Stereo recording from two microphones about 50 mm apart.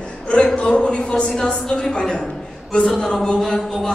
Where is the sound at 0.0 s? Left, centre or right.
Left.